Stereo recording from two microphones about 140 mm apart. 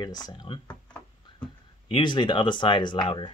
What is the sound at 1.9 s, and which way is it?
Speech, 35° left (ahead or behind).